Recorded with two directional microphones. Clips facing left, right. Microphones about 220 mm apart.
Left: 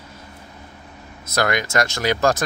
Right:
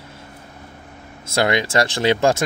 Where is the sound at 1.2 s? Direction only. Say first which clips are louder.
Right 2 dB; 25° right (ahead or behind).